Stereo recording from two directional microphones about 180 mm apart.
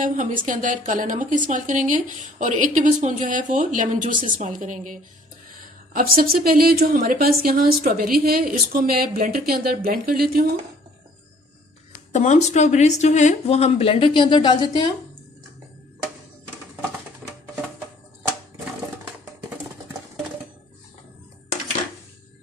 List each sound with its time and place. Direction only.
0.0 s a woman's voice: 50° right (ahead or behind)
12.1 s speech: 40° left (ahead or behind); by 14.9 s 25° left (ahead or behind)